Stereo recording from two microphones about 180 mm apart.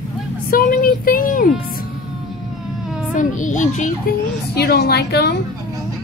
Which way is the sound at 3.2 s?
45° left (ahead or behind).